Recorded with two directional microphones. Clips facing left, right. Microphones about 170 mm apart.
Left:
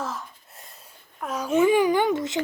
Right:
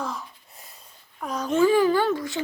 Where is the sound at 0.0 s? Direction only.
Centre (ahead or behind); by 2.4 s 20° left (ahead or behind).